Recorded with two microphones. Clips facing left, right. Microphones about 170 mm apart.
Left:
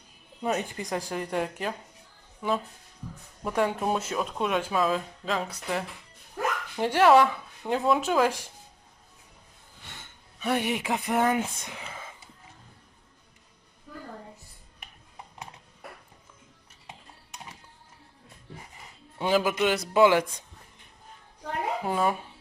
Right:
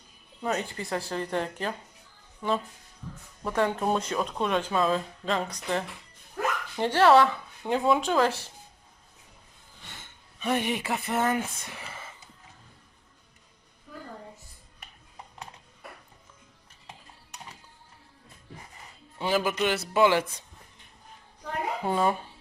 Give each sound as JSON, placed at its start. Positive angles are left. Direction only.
{"t": 0.4, "sound": "speech", "side_deg": 15}
{"t": 7.6, "sound": "speech", "side_deg": 0}
{"t": 10.4, "sound": "speech", "side_deg": 10}
{"t": 19.2, "sound": "speech", "side_deg": 15}
{"t": 21.8, "sound": "speech", "side_deg": 5}